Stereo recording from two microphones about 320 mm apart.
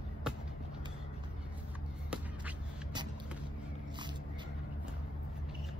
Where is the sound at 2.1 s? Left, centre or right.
Centre.